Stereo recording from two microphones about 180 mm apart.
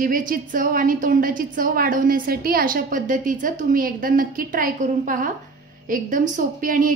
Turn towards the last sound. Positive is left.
turn(degrees=-50)  # may be behind; listen again after turning